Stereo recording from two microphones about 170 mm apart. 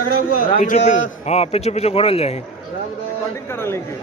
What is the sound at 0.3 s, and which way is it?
A man's voice, 50° left (ahead or behind).